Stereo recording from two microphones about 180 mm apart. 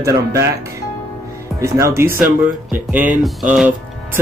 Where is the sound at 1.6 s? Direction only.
15° right (ahead or behind).